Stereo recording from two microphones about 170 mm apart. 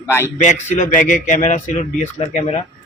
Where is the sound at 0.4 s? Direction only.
45° left (ahead or behind).